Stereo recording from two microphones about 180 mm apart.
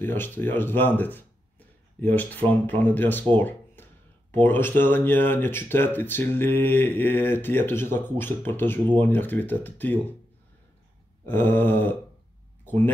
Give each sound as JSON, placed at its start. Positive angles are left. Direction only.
{"t": 0.0, "sound": "speech", "side_deg": 10}
{"t": 11.2, "sound": "speech", "side_deg": 10}